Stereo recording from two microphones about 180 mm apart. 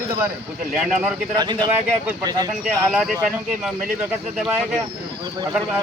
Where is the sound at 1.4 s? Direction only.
25° right (ahead or behind).